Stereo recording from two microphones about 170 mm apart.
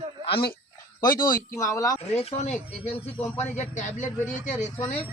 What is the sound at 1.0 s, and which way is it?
Speech, 55° left (ahead or behind).